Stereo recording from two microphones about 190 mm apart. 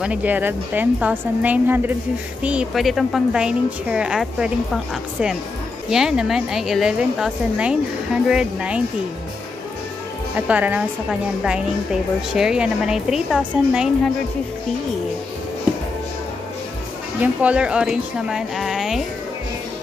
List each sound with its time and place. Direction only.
0.0 s a woman's voice: 5° right (ahead or behind)
5.9 s a woman's voice: 5° right (ahead or behind)
10.3 s a woman's voice: 10° right (ahead or behind)
17.2 s a woman's voice: 5° right (ahead or behind)